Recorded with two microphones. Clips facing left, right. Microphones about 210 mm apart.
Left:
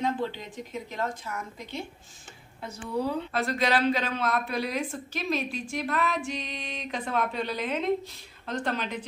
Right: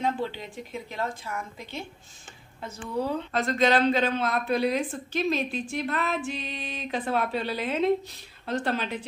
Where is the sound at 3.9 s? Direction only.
30° right (ahead or behind).